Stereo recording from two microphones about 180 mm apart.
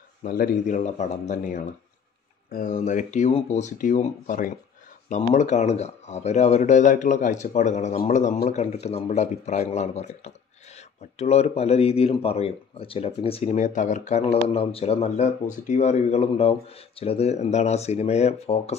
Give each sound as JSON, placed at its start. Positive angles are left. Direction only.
{"t": 0.2, "sound": "speech", "side_deg": 50}